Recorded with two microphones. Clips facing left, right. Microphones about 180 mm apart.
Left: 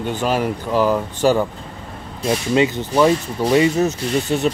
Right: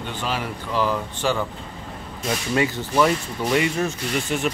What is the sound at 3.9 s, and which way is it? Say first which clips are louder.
Speech: left 5 dB; 35° left (ahead or behind).